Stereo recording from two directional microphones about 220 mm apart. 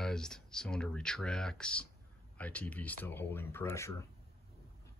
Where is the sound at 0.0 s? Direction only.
5° left (ahead or behind).